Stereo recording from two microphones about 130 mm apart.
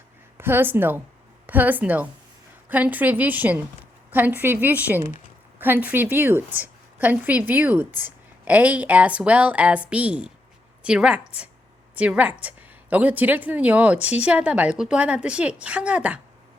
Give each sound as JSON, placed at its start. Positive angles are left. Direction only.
{"t": 0.3, "sound": "a woman's voice", "side_deg": -15}